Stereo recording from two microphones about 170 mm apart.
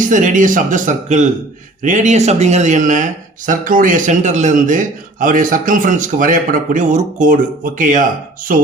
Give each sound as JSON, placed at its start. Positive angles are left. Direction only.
{"t": 0.0, "sound": "speech", "side_deg": -50}